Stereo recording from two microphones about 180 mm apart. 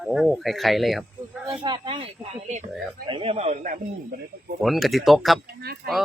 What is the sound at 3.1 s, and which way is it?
Speech, 30° right (ahead or behind).